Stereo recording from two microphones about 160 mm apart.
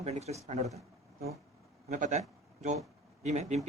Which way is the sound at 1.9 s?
50° right (ahead or behind).